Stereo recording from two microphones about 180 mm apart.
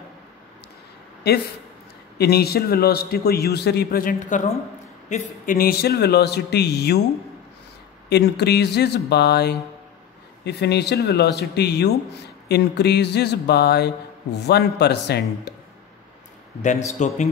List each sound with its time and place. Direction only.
1.3 s a man's voice: 60° left (ahead or behind)
8.1 s a man's voice: 65° left (ahead or behind)
16.6 s a man's voice: 40° left (ahead or behind)